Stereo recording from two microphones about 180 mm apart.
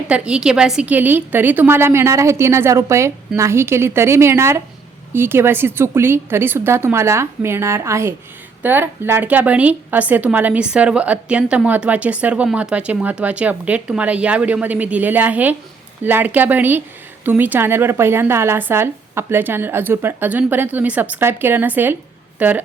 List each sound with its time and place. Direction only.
0.1 s a woman's voice: 5° right (ahead or behind)